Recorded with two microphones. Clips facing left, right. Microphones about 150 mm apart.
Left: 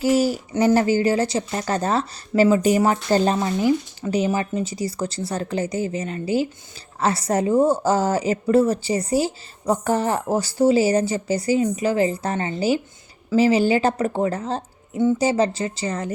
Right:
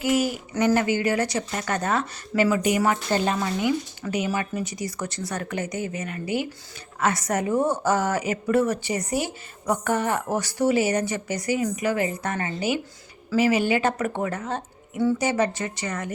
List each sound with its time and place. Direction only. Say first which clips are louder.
0.0 s speech: left 4 dB; 35° left (ahead or behind)